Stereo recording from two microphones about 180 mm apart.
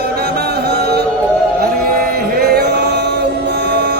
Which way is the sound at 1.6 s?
55° right (ahead or behind).